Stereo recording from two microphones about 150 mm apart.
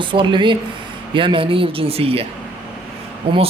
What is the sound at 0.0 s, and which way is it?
Speech, 35° right (ahead or behind).